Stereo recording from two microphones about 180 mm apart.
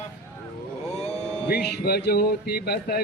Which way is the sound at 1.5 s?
60° left (ahead or behind).